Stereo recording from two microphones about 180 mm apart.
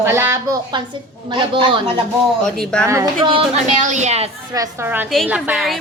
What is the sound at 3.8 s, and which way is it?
Speech, 40° right (ahead or behind).